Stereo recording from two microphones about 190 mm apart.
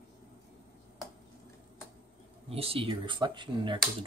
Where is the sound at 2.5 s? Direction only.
30° right (ahead or behind).